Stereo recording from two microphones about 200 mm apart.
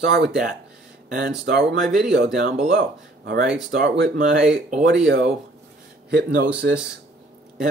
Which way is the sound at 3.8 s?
40° right (ahead or behind).